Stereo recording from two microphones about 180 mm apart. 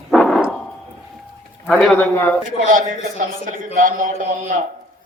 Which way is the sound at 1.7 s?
5° left (ahead or behind).